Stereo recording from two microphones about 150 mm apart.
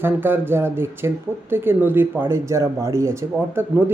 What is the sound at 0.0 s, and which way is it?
Speech, 15° right (ahead or behind).